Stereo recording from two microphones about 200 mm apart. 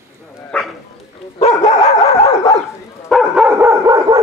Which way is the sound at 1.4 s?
30° left (ahead or behind).